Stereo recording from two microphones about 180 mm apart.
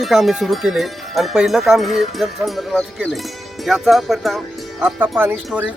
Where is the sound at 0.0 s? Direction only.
Centre (ahead or behind).